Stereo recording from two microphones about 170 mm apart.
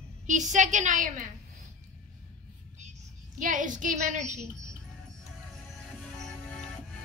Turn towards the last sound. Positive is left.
turn(degrees=5)  # may be behind; listen again after turning